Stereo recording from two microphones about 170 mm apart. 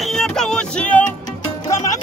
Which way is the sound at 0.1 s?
5° left (ahead or behind).